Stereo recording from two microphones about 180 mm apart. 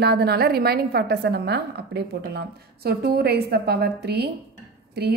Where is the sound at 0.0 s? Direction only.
65° right (ahead or behind).